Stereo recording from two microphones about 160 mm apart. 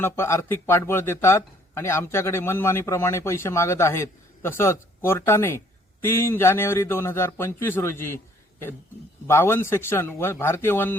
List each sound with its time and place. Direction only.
0.0 s speech: 15° left (ahead or behind)
9.2 s speech: 15° left (ahead or behind)